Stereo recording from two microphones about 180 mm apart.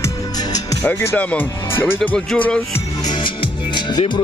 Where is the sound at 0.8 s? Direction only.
10° left (ahead or behind).